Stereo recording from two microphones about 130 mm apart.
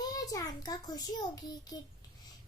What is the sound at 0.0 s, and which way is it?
A child's voice, 30° left (ahead or behind).